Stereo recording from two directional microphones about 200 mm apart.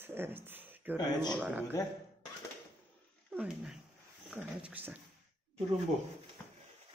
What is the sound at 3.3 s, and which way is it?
Speech, 5° right (ahead or behind).